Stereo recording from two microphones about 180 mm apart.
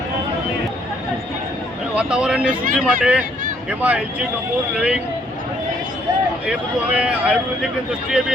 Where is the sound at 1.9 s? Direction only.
5° right (ahead or behind).